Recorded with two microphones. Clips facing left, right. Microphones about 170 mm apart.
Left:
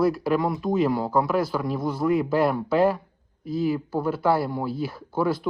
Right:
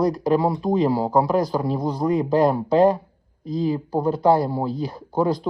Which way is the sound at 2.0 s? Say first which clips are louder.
Right 3 dB; 35° right (ahead or behind).